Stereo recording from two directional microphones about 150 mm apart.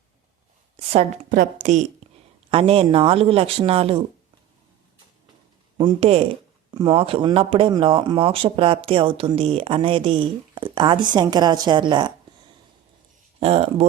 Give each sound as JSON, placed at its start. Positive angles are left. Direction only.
{"t": 0.8, "sound": "speech", "side_deg": -40}
{"t": 1.3, "sound": "a woman's voice", "side_deg": -60}
{"t": 2.5, "sound": "speech", "side_deg": -40}
{"t": 6.0, "sound": "speech", "side_deg": -40}
{"t": 13.4, "sound": "a woman's voice", "side_deg": -45}